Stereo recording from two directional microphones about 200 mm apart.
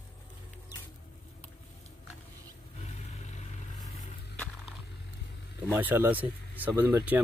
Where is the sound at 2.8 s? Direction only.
35° left (ahead or behind).